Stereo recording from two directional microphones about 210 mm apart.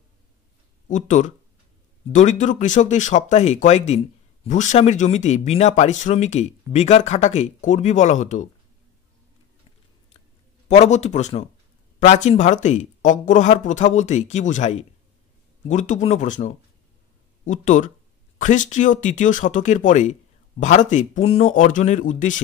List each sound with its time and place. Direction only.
0.8 s speech: 35° left (ahead or behind)
10.7 s speech: 35° left (ahead or behind)